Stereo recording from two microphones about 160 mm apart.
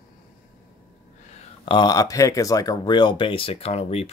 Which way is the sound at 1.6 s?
25° left (ahead or behind).